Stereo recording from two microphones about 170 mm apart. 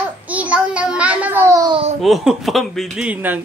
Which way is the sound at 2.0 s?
Centre (ahead or behind).